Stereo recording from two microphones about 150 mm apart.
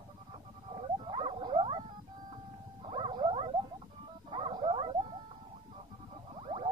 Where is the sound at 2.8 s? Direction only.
35° right (ahead or behind).